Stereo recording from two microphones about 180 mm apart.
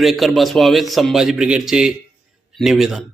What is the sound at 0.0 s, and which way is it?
A man's voice, centre (ahead or behind).